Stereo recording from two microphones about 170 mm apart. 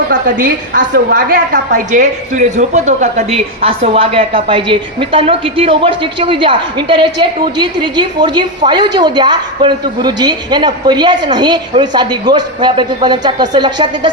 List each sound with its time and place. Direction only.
0.1 s a woman's voice: 55° right (ahead or behind); by 14.1 s 25° right (ahead or behind)